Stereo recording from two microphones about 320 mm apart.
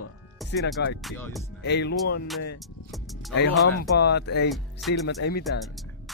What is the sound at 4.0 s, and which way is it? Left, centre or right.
A man's voice, left.